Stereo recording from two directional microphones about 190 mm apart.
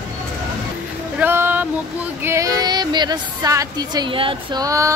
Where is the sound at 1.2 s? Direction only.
10° right (ahead or behind).